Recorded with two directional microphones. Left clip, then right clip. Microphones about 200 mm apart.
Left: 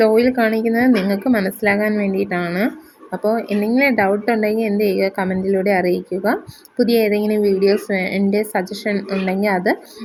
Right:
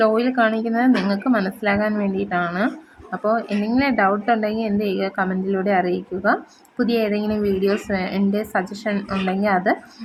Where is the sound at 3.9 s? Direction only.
50° left (ahead or behind).